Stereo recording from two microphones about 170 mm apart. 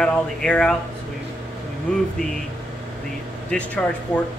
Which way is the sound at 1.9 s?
5° left (ahead or behind).